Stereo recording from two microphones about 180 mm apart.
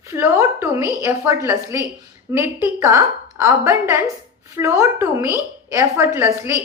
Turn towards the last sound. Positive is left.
turn(degrees=-15)  # may be behind; listen again after turning